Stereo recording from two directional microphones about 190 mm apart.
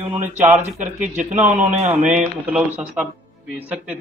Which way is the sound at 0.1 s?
35° right (ahead or behind).